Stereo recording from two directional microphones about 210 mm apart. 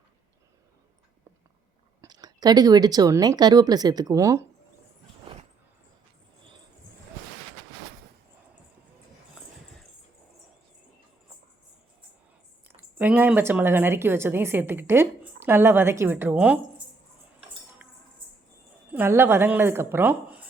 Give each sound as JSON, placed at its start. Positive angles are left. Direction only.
{"t": 2.0, "sound": "speech", "side_deg": -20}
{"t": 12.6, "sound": "speech", "side_deg": -10}
{"t": 17.8, "sound": "cutlery", "side_deg": -5}
{"t": 18.9, "sound": "speech", "side_deg": -10}